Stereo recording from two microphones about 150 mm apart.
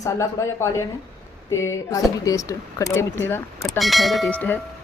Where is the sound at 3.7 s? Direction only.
Centre (ahead or behind).